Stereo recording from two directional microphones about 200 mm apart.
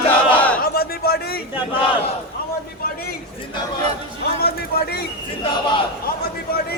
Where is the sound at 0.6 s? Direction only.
50° left (ahead or behind).